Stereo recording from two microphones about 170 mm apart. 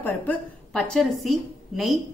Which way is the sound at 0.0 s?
10° left (ahead or behind).